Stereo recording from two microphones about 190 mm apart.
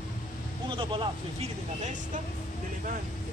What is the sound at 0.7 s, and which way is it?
Speech, 25° right (ahead or behind).